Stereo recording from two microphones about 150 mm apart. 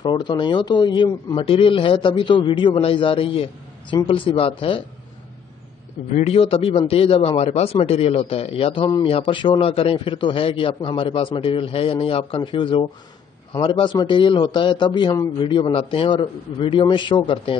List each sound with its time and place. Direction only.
0.0 s a man's voice: 30° left (ahead or behind)
6.1 s a man's voice: 45° left (ahead or behind)